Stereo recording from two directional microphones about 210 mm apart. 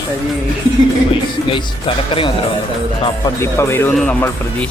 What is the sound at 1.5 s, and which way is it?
Speech, 25° left (ahead or behind).